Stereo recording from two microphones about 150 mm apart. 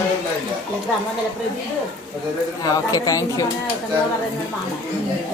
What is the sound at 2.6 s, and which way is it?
Speech, 25° left (ahead or behind).